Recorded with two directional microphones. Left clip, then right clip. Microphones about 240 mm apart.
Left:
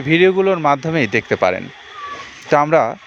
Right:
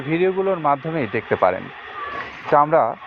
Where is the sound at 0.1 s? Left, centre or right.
Left.